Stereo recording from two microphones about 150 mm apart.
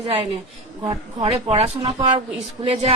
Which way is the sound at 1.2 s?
40° right (ahead or behind).